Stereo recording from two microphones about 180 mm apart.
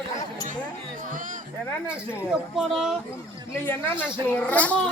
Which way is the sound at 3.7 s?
10° left (ahead or behind).